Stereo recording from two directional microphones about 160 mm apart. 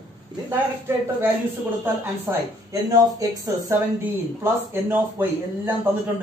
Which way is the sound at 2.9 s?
20° right (ahead or behind).